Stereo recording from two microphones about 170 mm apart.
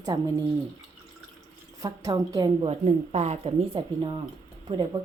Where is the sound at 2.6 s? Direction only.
40° right (ahead or behind).